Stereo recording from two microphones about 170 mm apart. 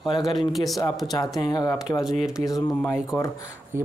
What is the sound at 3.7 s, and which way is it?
Speech, 15° right (ahead or behind).